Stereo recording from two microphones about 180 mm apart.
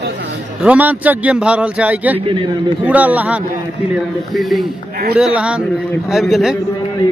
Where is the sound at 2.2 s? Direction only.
30° right (ahead or behind).